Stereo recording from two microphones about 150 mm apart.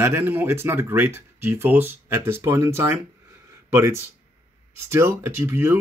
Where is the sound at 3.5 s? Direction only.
15° right (ahead or behind).